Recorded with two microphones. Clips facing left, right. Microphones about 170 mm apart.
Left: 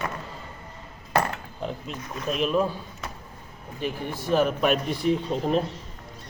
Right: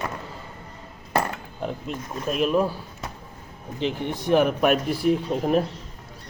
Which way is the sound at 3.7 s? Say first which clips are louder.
Right 4 dB; 20° right (ahead or behind).